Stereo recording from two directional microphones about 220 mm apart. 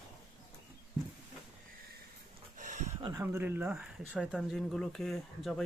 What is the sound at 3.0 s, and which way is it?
Speech, 20° right (ahead or behind).